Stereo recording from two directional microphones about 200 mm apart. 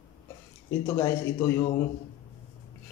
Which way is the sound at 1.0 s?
15° left (ahead or behind).